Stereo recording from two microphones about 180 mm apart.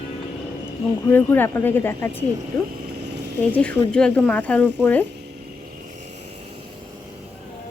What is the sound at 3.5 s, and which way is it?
A woman's voice, 5° left (ahead or behind).